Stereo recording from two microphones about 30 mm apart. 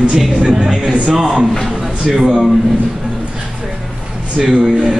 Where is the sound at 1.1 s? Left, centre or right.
Centre.